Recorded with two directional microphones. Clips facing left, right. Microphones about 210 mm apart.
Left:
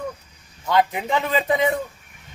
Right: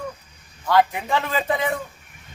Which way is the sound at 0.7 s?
20° left (ahead or behind).